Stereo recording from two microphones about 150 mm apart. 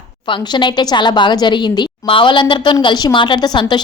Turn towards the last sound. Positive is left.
turn(degrees=30)  # may be behind; listen again after turning